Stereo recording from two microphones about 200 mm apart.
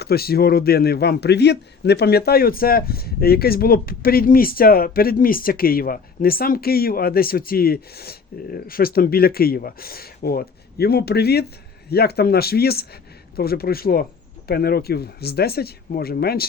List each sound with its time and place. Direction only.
0.0 s a man's voice: 50° left (ahead or behind)